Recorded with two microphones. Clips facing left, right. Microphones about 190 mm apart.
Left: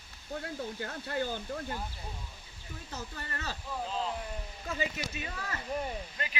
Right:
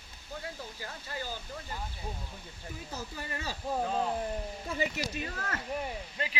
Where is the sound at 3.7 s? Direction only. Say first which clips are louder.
Right 5 dB; 60° right (ahead or behind).